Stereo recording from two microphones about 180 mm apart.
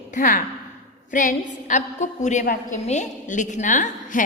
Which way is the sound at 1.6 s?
45° left (ahead or behind).